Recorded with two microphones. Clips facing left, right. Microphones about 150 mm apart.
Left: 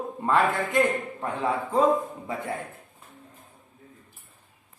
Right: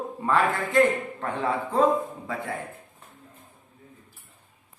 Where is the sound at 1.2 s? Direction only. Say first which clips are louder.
Even; 10° left (ahead or behind).